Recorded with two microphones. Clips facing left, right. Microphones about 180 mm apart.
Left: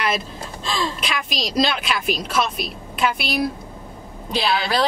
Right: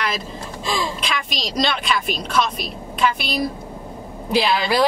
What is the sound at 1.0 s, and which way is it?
A woman's voice, centre (ahead or behind).